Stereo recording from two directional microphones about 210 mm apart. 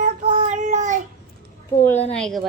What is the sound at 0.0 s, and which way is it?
Child singing, 35° right (ahead or behind).